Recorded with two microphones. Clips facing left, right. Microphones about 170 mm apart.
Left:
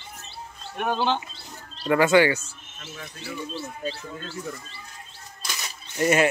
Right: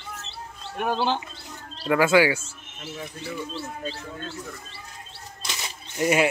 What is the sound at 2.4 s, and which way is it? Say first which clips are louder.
Speech: right 4 dB; 25° right (ahead or behind).